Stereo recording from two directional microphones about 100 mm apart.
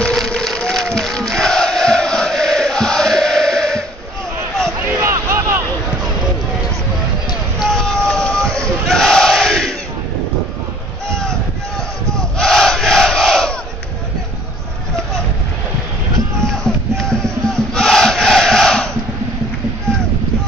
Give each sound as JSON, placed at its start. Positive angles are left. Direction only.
{"t": 0.0, "sound": "crowd", "side_deg": 5}
{"t": 4.8, "sound": "a sound", "side_deg": -25}
{"t": 7.6, "sound": "vehicle", "side_deg": 5}
{"t": 8.8, "sound": "crowd", "side_deg": 5}
{"t": 12.2, "sound": "battle cry", "side_deg": 5}
{"t": 16.6, "sound": "a sound", "side_deg": 5}
{"t": 17.7, "sound": "battle cry", "side_deg": 5}